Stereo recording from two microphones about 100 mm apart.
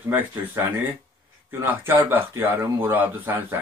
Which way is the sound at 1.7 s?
25° right (ahead or behind).